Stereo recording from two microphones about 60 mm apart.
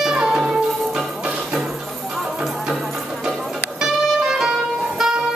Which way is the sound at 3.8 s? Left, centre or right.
Centre.